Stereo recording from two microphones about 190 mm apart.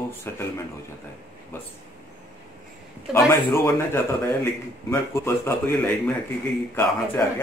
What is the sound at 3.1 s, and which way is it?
Speech, 5° right (ahead or behind).